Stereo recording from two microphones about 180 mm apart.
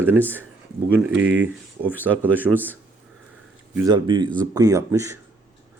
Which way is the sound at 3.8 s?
25° right (ahead or behind).